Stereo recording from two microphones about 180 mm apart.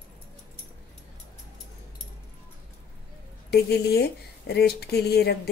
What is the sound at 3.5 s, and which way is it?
Speech, 65° left (ahead or behind).